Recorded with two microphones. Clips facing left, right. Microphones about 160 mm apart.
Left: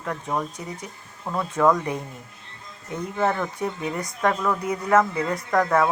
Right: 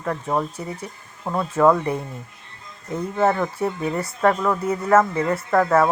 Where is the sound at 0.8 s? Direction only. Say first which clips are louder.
Right 3 dB; 20° right (ahead or behind).